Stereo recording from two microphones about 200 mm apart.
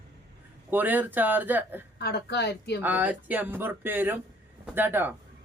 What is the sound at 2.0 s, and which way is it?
Speech, 55° left (ahead or behind).